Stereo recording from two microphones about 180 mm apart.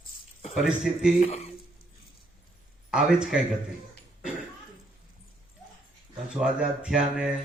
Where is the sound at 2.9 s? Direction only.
5° right (ahead or behind).